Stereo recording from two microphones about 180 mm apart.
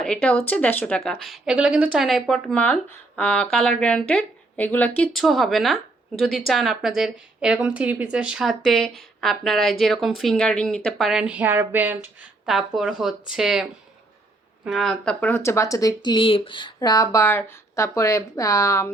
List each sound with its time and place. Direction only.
0.0 s speech: 5° left (ahead or behind)
16.0 s speech: 30° left (ahead or behind)